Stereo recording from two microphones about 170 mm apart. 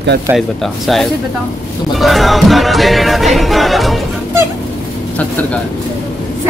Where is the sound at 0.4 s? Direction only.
Centre (ahead or behind).